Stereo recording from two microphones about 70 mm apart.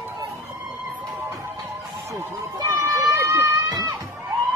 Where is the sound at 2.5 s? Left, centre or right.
Right.